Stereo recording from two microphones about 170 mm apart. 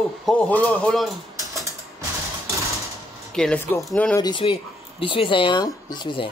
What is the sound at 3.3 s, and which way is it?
Speech, 5° left (ahead or behind).